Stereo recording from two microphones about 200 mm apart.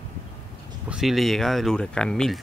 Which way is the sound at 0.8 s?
Centre (ahead or behind).